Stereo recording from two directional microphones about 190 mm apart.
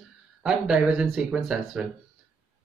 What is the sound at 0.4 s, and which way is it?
Speech, 5° right (ahead or behind).